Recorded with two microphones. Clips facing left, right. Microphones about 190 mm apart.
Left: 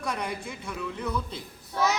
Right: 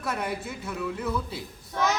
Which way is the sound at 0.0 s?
5° right (ahead or behind).